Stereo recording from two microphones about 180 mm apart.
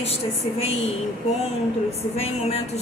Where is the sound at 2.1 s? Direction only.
35° left (ahead or behind).